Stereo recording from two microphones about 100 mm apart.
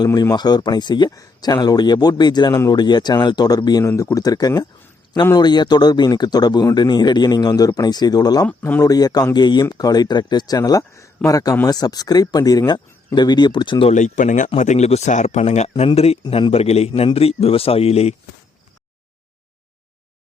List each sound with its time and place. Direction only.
0.0 s speech: 40° left (ahead or behind); by 13.9 s 55° left (ahead or behind)
14.5 s a man's voice: 90° left
17.2 s speech: 80° left